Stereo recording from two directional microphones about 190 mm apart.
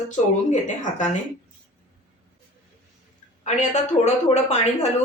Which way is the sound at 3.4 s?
40° left (ahead or behind).